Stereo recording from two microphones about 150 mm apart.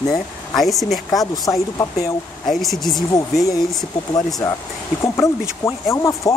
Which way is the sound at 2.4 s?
Centre (ahead or behind).